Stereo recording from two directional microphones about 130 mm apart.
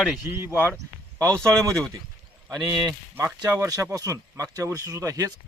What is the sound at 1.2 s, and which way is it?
Speech, 5° left (ahead or behind).